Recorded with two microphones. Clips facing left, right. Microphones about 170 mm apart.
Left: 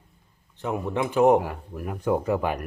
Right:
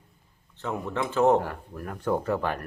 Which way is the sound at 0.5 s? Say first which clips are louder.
Left 3 dB; 15° left (ahead or behind).